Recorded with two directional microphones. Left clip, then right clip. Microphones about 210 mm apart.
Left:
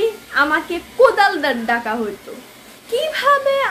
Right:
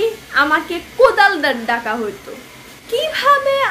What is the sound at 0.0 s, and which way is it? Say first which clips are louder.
A woman's voice: right 1 dB; centre (ahead or behind).